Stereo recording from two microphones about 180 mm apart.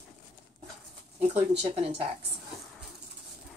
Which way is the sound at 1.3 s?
35° right (ahead or behind).